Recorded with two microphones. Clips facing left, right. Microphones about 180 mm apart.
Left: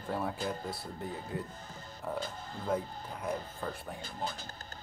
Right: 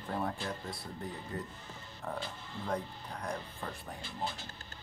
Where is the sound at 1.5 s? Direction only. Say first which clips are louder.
Left 2 dB; 45° left (ahead or behind).